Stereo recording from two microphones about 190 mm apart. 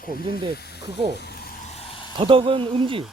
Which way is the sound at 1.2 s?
55° left (ahead or behind).